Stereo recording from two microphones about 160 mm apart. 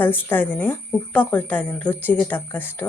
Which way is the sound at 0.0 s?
10° left (ahead or behind).